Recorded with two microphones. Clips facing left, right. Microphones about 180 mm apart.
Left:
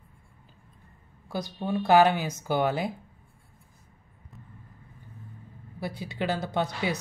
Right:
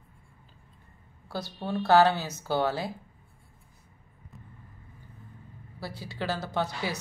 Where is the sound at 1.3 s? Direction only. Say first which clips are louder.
Left 3 dB; 15° left (ahead or behind).